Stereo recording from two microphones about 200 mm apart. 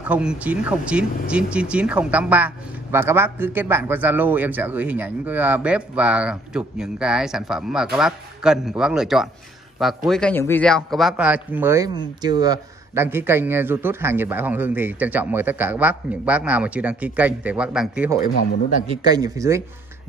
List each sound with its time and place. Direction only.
0.1 s speech: 5° right (ahead or behind)
18.2 s speech: 45° left (ahead or behind)
18.9 s speech: 20° right (ahead or behind)